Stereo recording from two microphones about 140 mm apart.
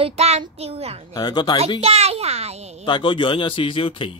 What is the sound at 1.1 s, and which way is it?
Speech, 30° left (ahead or behind).